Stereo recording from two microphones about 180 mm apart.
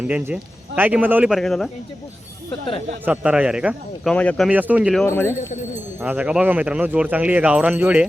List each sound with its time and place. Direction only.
0.8 s speech: 10° right (ahead or behind)
2.5 s speech: 30° left (ahead or behind)
3.0 s speech: 10° right (ahead or behind)
4.1 s speech: 5° left (ahead or behind)
4.4 s speech: 10° right (ahead or behind)
5.0 s speech: 15° left (ahead or behind)
6.0 s speech: 5° right (ahead or behind)